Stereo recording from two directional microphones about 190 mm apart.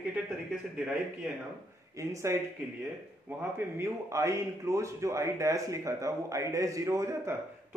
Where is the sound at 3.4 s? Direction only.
10° right (ahead or behind).